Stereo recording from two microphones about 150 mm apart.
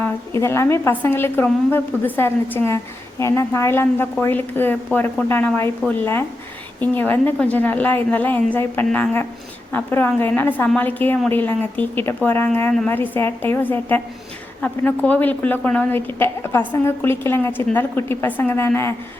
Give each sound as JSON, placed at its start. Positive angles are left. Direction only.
{"t": 0.0, "sound": "a woman's voice", "side_deg": 20}